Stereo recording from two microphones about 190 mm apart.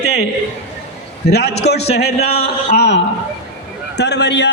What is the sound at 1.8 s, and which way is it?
Speech, 35° left (ahead or behind).